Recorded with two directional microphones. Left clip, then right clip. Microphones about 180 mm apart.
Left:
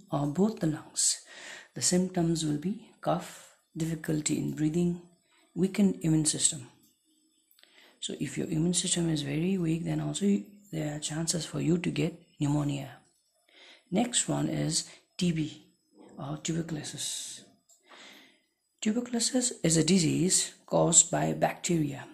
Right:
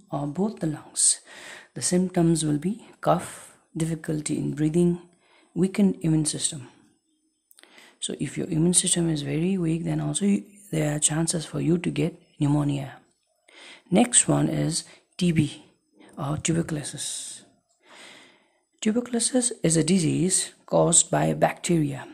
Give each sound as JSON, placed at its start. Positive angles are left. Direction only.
{"t": 0.1, "sound": "speech", "side_deg": 0}
{"t": 7.6, "sound": "a sound", "side_deg": -30}
{"t": 8.6, "sound": "speech", "side_deg": -30}
{"t": 11.2, "sound": "speech", "side_deg": -20}
{"t": 13.5, "sound": "speech", "side_deg": -35}
{"t": 15.3, "sound": "a sound", "side_deg": -35}
{"t": 18.8, "sound": "speech", "side_deg": -30}